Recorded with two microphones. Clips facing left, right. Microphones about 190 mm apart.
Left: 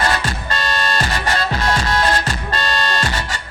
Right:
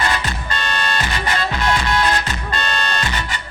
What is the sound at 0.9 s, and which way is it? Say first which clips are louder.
Music: left 2 dB; 45° left (ahead or behind).